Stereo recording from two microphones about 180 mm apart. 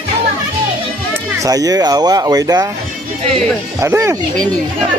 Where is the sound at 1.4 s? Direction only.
20° right (ahead or behind).